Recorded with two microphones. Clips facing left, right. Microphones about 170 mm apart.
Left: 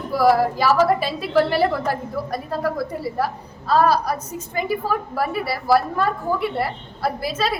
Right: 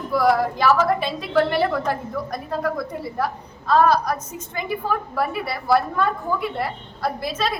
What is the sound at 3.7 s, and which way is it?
A woman's voice, 10° left (ahead or behind).